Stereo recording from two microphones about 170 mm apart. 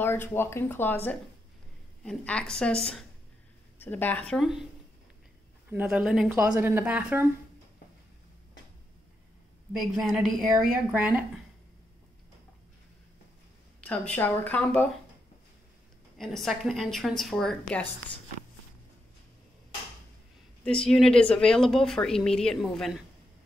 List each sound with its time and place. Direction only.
0.0 s speech: 15° left (ahead or behind)
5.7 s speech: 10° right (ahead or behind)
9.7 s speech: centre (ahead or behind)
13.7 s speech: 10° left (ahead or behind)
16.2 s speech: centre (ahead or behind)
20.6 s speech: 5° left (ahead or behind)